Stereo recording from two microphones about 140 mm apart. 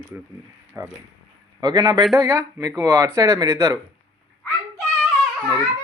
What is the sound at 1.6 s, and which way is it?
Speech, 30° right (ahead or behind).